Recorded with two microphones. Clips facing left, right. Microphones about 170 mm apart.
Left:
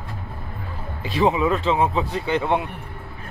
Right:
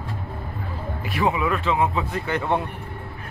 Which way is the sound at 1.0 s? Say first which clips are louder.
Left 4 dB; 20° left (ahead or behind).